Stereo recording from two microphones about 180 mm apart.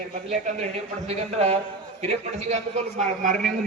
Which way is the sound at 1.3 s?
35° right (ahead or behind).